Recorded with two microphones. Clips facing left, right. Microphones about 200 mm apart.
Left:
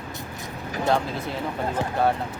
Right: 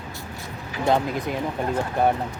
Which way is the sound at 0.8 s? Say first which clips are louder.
Right 2 dB; 15° right (ahead or behind).